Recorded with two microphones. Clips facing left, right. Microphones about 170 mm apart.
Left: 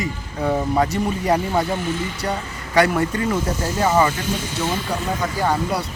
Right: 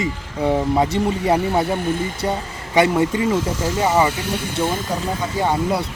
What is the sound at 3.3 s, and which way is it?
Speech, 90° right.